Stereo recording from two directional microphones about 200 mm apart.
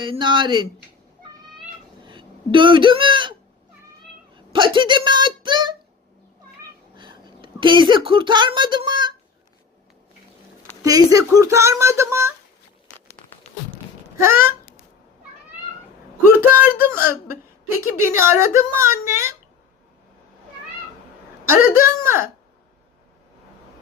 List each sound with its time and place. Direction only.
0.0 s speech: 25° right (ahead or behind)
2.0 s speech: 25° right (ahead or behind)
4.4 s speech: 25° right (ahead or behind)
6.9 s a woman's voice: 25° right (ahead or behind)
10.8 s speech: 15° right (ahead or behind)
14.2 s speech: 10° right (ahead or behind)
16.3 s speech: 10° right (ahead or behind)
21.4 s speech: 15° right (ahead or behind)